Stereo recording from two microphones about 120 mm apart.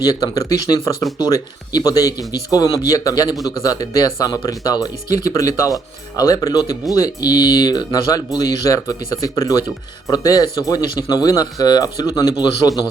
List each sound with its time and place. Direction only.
0.0 s speech: 30° left (ahead or behind)